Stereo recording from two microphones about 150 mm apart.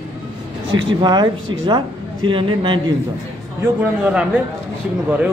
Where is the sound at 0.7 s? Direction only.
30° right (ahead or behind).